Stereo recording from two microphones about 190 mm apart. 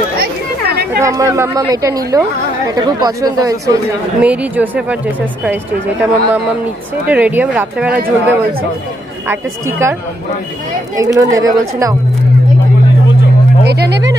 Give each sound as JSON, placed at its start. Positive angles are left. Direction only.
{"t": 0.2, "sound": "chatter", "side_deg": -55}
{"t": 0.9, "sound": "speech", "side_deg": -15}
{"t": 4.2, "sound": "speech", "side_deg": -5}
{"t": 9.3, "sound": "speech", "side_deg": -15}
{"t": 11.0, "sound": "speech", "side_deg": -20}
{"t": 13.7, "sound": "speech", "side_deg": -60}